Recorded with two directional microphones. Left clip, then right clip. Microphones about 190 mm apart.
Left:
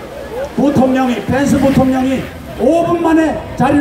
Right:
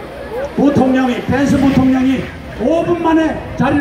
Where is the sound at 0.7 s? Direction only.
35° left (ahead or behind).